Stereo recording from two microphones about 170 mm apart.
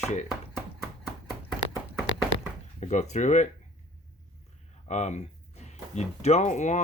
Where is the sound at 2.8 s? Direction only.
40° left (ahead or behind).